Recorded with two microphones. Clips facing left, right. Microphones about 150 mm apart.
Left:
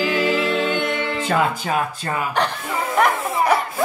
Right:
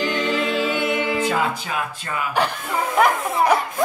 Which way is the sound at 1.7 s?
35° left (ahead or behind).